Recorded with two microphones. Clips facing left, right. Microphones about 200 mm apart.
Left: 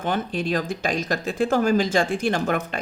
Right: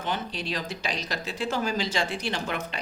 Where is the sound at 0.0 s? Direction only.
50° left (ahead or behind).